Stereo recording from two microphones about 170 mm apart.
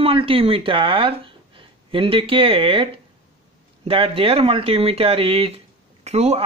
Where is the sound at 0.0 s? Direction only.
35° right (ahead or behind).